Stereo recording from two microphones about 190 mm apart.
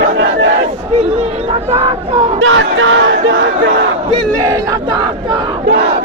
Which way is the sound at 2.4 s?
90° right.